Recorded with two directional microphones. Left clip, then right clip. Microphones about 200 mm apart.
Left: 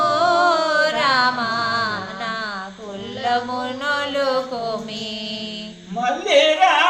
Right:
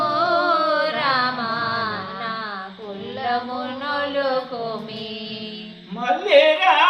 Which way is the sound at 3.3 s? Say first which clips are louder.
Left 3 dB; 35° left (ahead or behind).